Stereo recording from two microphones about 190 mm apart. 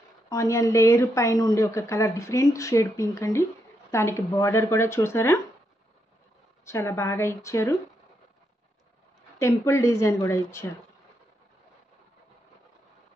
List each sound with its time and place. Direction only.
0.3 s a woman's voice: 15° left (ahead or behind)
6.6 s a woman's voice: 15° left (ahead or behind)
9.4 s a woman's voice: 15° left (ahead or behind)